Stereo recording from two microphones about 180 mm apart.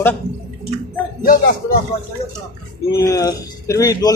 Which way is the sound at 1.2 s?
55° left (ahead or behind).